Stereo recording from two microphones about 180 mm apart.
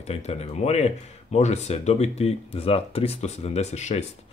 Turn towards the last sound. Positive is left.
turn(degrees=40)  # may be behind; listen again after turning